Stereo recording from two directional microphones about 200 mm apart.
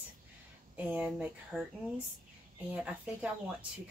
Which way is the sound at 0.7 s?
5° right (ahead or behind).